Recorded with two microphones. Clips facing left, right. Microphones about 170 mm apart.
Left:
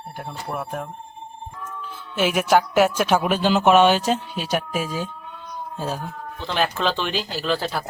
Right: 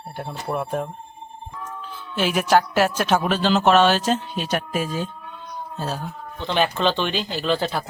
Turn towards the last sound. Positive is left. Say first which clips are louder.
# right 1 dB
turn(degrees=0)  # may be behind; listen again after turning